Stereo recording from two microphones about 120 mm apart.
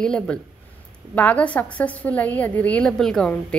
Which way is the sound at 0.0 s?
5° left (ahead or behind).